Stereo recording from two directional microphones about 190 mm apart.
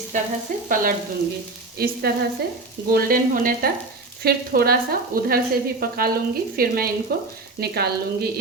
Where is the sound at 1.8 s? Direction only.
50° right (ahead or behind).